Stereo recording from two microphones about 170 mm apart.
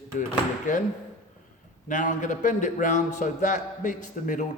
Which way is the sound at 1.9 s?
50° left (ahead or behind).